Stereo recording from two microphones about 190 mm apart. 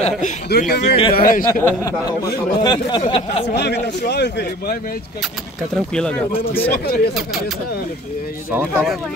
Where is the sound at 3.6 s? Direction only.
65° left (ahead or behind).